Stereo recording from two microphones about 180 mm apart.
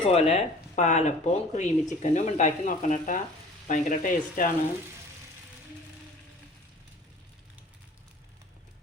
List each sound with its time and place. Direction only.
0.0 s speech: 35° left (ahead or behind)